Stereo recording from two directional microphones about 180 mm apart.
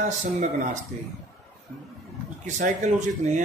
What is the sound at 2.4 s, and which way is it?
Speech, 45° right (ahead or behind).